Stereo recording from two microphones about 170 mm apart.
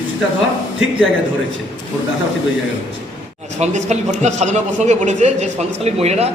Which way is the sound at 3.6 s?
40° right (ahead or behind).